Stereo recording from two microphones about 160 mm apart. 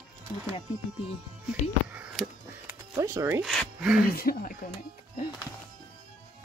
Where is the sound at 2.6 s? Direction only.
20° right (ahead or behind).